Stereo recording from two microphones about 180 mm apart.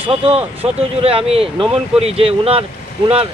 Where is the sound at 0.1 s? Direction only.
35° right (ahead or behind).